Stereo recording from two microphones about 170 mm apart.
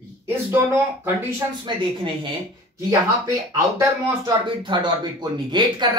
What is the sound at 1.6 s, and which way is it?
Speech, 30° right (ahead or behind).